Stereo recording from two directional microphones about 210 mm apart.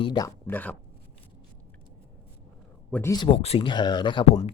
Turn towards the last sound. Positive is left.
turn(degrees=25)  # may be behind; listen again after turning